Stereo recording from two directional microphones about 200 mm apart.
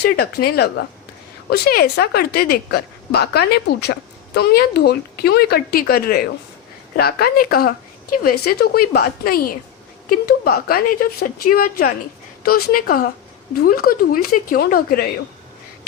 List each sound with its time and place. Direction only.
0.0 s a woman's voice: 50° left (ahead or behind)